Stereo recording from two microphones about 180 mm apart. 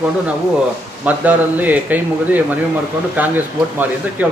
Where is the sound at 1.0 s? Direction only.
10° right (ahead or behind).